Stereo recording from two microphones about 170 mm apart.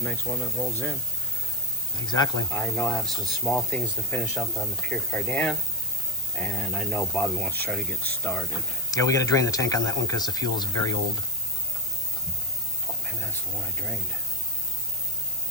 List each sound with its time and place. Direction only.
0.0 s speech: centre (ahead or behind)
2.1 s speech: 15° left (ahead or behind)
8.9 s speech: 20° left (ahead or behind)